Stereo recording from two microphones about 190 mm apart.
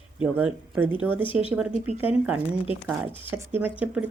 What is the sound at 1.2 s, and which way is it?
Speech, 25° left (ahead or behind).